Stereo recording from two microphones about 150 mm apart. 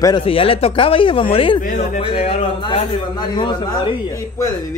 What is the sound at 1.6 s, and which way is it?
Speech, 60° left (ahead or behind).